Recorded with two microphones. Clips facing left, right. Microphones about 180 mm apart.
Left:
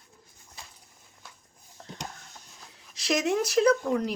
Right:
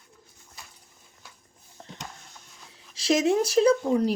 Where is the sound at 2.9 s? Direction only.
30° right (ahead or behind).